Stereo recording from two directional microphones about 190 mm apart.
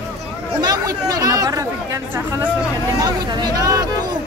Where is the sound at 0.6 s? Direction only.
20° right (ahead or behind).